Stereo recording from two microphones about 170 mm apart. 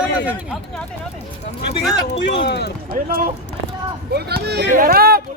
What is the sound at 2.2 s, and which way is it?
Speech, 90° left.